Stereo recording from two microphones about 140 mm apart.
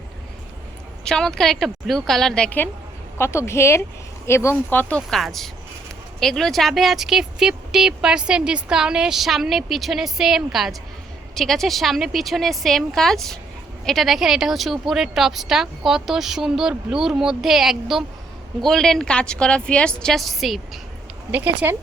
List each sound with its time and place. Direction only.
1.0 s a woman's voice: 5° left (ahead or behind)
21.3 s speech: 15° right (ahead or behind)